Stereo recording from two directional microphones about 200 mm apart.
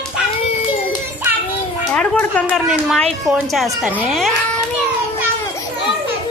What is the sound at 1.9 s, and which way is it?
Speech, 5° left (ahead or behind).